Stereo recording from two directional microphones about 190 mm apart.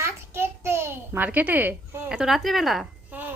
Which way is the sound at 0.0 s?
10° right (ahead or behind).